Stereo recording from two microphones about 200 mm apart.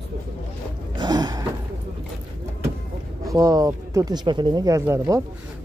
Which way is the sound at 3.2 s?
15° right (ahead or behind).